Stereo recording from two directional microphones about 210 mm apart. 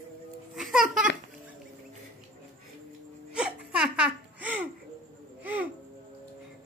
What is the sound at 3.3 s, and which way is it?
Laughter, 5° right (ahead or behind).